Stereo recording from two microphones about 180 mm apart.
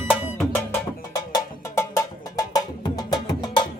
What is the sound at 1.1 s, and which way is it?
Music, 15° left (ahead or behind).